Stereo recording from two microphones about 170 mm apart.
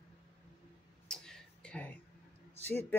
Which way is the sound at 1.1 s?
5° left (ahead or behind).